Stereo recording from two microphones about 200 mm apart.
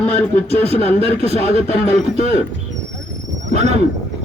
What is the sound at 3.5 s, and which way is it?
Speech, 35° right (ahead or behind).